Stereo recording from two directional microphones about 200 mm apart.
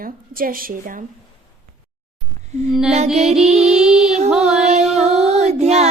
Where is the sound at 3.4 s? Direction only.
5° right (ahead or behind).